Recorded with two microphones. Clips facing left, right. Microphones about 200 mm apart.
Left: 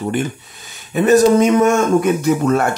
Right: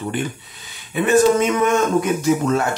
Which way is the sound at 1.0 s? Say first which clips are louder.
Left 4 dB; 40° left (ahead or behind).